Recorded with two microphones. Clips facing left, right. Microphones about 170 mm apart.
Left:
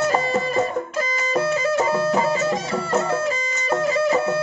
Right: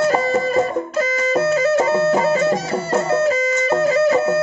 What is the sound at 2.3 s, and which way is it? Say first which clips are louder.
Music: right 4 dB; 40° right (ahead or behind).